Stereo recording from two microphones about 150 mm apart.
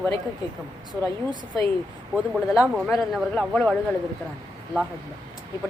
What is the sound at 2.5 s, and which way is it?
A man's voice, 5° right (ahead or behind).